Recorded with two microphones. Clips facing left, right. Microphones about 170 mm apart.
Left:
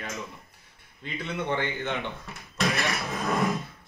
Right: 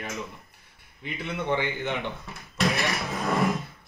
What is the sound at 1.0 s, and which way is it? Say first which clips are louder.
Speech: right 1 dB; 10° right (ahead or behind).